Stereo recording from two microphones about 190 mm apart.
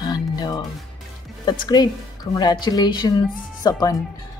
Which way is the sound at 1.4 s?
20° left (ahead or behind).